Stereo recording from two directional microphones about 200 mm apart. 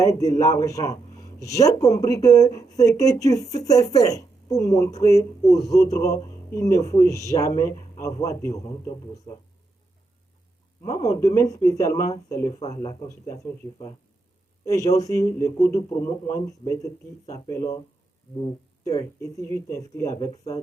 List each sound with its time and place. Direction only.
0.0 s speech: 15° left (ahead or behind)
10.8 s speech: 15° left (ahead or behind)
18.9 s speech: 15° left (ahead or behind)